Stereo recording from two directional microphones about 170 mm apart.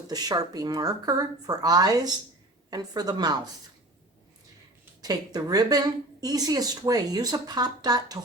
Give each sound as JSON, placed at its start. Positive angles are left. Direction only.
{"t": 0.1, "sound": "speech", "side_deg": -20}
{"t": 5.0, "sound": "speech", "side_deg": -20}